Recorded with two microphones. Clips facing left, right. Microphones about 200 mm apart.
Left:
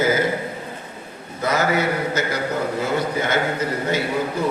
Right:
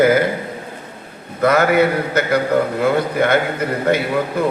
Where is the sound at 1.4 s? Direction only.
60° right (ahead or behind).